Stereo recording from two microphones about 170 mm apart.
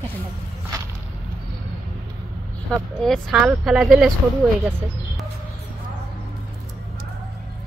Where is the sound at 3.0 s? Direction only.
Centre (ahead or behind).